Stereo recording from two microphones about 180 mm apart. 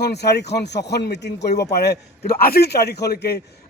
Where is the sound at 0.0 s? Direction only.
65° left (ahead or behind).